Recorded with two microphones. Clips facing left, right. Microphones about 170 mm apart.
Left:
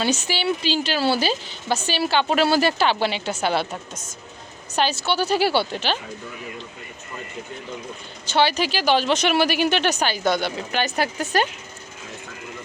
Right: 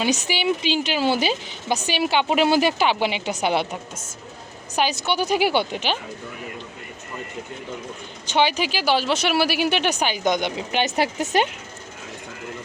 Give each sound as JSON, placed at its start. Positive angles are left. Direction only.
{"t": 0.0, "sound": "speech", "side_deg": -15}
{"t": 8.3, "sound": "speech", "side_deg": -15}